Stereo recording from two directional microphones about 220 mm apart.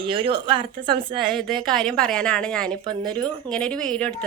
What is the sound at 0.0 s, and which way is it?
Speech, 25° right (ahead or behind).